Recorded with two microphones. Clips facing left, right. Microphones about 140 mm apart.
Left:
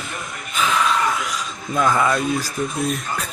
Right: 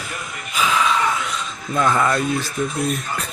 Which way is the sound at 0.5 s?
Centre (ahead or behind).